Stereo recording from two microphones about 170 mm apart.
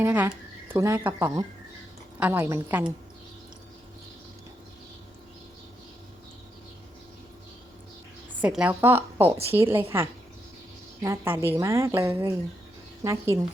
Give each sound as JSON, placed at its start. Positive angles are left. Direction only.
{"t": 0.0, "sound": "a woman's voice", "side_deg": -10}
{"t": 8.4, "sound": "a woman's voice", "side_deg": -5}